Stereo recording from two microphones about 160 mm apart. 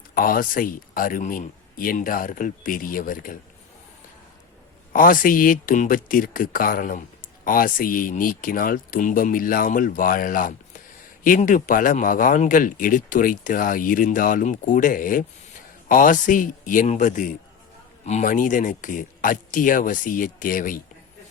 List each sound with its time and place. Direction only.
0.1 s speech: 60° left (ahead or behind)
4.9 s speech: 60° left (ahead or behind)